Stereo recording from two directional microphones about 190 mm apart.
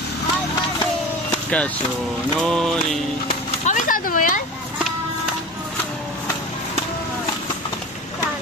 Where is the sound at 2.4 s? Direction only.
5° left (ahead or behind).